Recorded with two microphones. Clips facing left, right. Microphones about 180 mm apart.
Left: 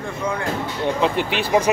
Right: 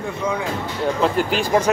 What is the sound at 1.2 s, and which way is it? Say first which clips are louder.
Speech: right 2 dB; 40° right (ahead or behind).